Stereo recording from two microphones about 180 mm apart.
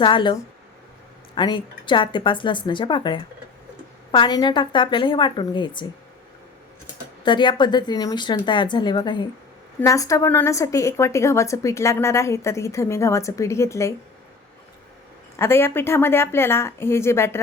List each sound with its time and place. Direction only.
0.0 s a woman's voice: 25° left (ahead or behind)
1.4 s a woman's voice: 25° left (ahead or behind)
7.3 s a woman's voice: 25° left (ahead or behind)
15.4 s a woman's voice: 15° left (ahead or behind)